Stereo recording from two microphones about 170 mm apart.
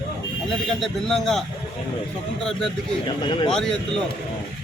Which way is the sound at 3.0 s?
30° left (ahead or behind).